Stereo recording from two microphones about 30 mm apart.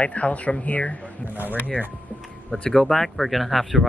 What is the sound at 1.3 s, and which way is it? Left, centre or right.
Speech, right.